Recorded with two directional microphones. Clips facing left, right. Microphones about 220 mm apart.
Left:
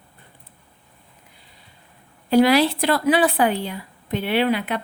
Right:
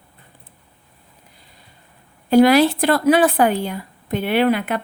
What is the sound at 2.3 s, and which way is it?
A woman's voice, 45° right (ahead or behind).